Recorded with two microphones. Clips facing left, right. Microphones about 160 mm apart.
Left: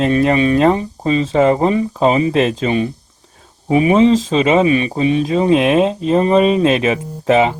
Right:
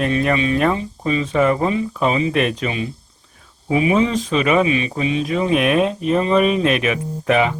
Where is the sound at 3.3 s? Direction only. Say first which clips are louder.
Left 5 dB; 35° left (ahead or behind).